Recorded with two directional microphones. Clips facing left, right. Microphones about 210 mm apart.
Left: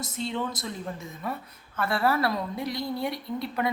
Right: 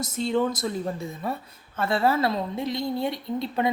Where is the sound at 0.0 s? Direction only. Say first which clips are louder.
Right 7 dB; 45° right (ahead or behind).